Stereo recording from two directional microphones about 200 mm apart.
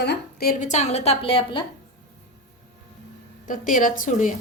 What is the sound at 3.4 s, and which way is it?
Speech, 40° left (ahead or behind).